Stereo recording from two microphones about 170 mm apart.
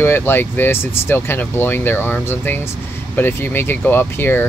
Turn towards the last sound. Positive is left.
turn(degrees=15)  # may be behind; listen again after turning